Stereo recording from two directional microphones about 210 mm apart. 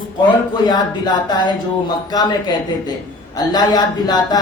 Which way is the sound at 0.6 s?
20° left (ahead or behind).